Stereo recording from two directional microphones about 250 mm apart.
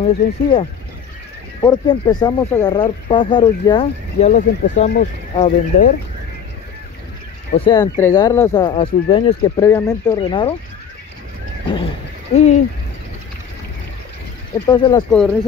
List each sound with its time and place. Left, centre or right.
0.0 s speech: left
7.5 s speech: centre
12.4 s speech: left
14.7 s speech: centre
15.0 s speech: centre